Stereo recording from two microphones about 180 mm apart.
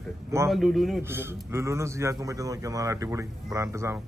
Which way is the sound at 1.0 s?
15° right (ahead or behind).